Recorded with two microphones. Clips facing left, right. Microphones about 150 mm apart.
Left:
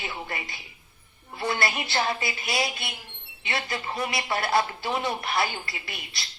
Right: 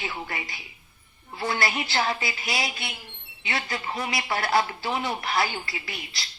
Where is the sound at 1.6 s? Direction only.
25° left (ahead or behind).